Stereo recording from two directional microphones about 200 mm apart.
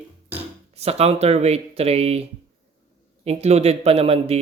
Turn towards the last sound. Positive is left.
turn(degrees=-30)  # may be behind; listen again after turning